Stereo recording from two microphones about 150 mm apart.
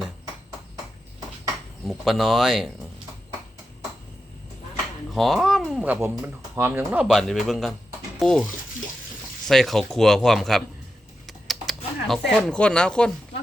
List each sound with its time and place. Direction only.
1.9 s speech: centre (ahead or behind)
5.1 s speech: centre (ahead or behind)
5.8 s speech: 10° right (ahead or behind); by 8.4 s 5° left (ahead or behind)
9.5 s speech: centre (ahead or behind)
11.3 s typing: centre (ahead or behind)
12.0 s speech: centre (ahead or behind)